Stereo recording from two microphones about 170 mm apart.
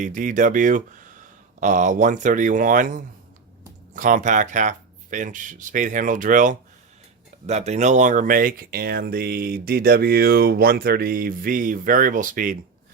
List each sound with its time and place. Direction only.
0.0 s speech: 50° right (ahead or behind)